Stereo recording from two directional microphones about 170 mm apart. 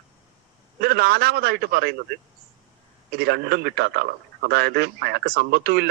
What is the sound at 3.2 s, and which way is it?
Speech, 70° right (ahead or behind).